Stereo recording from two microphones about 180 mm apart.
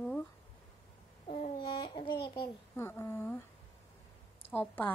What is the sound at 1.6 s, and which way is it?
Speech, 25° left (ahead or behind).